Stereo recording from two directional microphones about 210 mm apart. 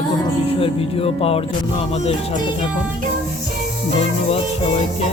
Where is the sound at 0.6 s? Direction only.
25° left (ahead or behind).